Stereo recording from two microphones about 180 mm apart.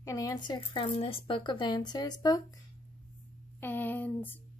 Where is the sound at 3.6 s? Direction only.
10° left (ahead or behind).